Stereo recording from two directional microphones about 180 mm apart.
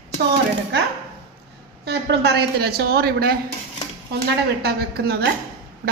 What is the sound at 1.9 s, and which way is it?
A man's voice, 65° right (ahead or behind).